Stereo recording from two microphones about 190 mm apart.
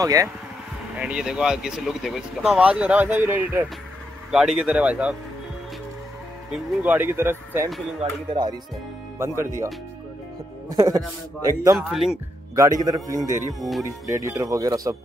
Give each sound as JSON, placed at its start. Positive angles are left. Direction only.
{"t": 0.0, "sound": "speech", "side_deg": -15}
{"t": 0.9, "sound": "speech", "side_deg": -5}
{"t": 6.5, "sound": "speech", "side_deg": -10}
{"t": 8.0, "sound": "speech", "side_deg": -25}
{"t": 9.2, "sound": "speech", "side_deg": -15}
{"t": 10.7, "sound": "speech", "side_deg": -20}
{"t": 11.9, "sound": "speech", "side_deg": 0}
{"t": 12.5, "sound": "speech", "side_deg": -15}
{"t": 13.6, "sound": "speech", "side_deg": 0}
{"t": 13.8, "sound": "speech", "side_deg": -15}